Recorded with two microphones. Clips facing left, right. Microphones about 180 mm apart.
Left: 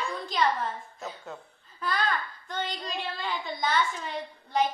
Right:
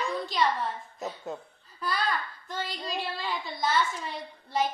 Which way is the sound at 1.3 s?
20° right (ahead or behind).